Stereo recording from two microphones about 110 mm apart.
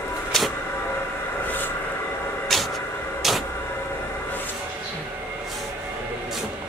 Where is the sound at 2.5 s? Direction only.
5° left (ahead or behind).